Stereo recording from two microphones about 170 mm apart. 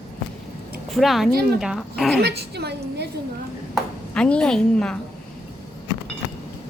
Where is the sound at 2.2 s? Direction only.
75° right (ahead or behind).